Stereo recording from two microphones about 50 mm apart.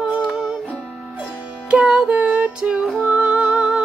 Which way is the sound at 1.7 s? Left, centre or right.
Right.